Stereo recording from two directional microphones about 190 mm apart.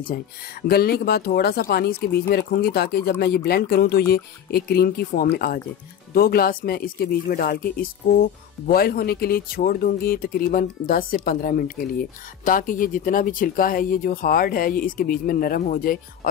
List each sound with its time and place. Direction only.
0.0 s speech: 50° left (ahead or behind)